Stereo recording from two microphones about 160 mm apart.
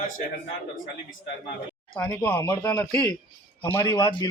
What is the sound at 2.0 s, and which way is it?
A man's voice, 15° left (ahead or behind).